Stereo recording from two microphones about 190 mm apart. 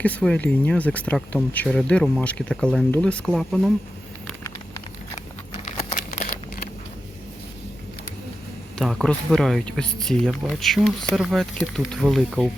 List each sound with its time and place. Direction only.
0.0 s speech: 5° left (ahead or behind)
5.6 s crumpling: 45° left (ahead or behind)
8.8 s speech: centre (ahead or behind)